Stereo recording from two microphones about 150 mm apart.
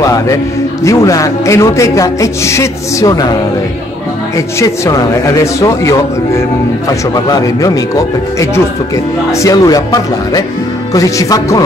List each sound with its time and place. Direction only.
0.0 s music: 20° left (ahead or behind)
0.8 s a man's voice: 20° left (ahead or behind)
4.6 s a man's voice: 20° left (ahead or behind)